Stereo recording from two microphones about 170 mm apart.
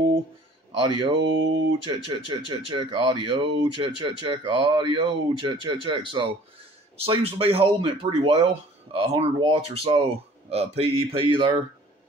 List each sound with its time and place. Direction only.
0.7 s speech: 30° right (ahead or behind)